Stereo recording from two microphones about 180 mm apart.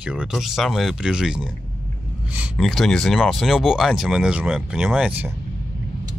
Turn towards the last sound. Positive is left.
turn(degrees=-10)  # may be behind; listen again after turning